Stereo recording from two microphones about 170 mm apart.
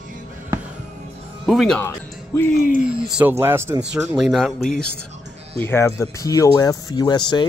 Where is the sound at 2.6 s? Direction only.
50° left (ahead or behind).